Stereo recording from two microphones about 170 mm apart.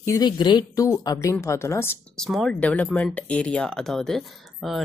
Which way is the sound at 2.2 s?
Centre (ahead or behind).